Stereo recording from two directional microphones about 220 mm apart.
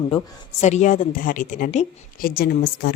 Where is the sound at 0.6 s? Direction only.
30° left (ahead or behind).